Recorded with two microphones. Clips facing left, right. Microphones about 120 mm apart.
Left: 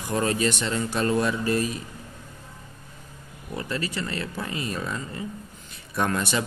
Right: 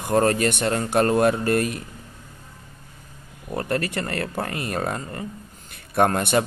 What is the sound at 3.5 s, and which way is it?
A man's voice, 55° right (ahead or behind).